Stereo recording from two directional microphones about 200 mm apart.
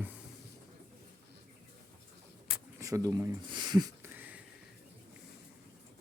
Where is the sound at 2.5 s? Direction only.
15° right (ahead or behind).